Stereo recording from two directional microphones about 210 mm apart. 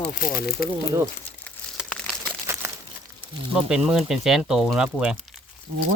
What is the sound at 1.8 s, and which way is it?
Crumpling, 5° left (ahead or behind).